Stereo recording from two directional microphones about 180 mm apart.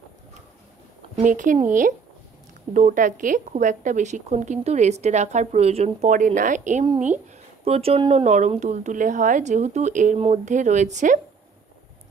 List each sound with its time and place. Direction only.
1.2 s speech: 45° right (ahead or behind)